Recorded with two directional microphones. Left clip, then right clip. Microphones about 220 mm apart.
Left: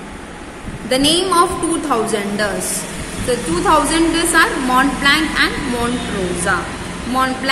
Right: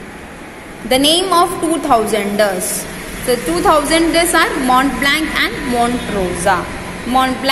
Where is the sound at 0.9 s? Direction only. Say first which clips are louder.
Right 2 dB; 15° right (ahead or behind).